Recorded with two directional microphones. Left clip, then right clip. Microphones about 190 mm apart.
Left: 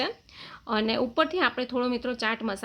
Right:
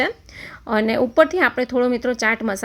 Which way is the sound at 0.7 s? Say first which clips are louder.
Right 8 dB; 25° right (ahead or behind).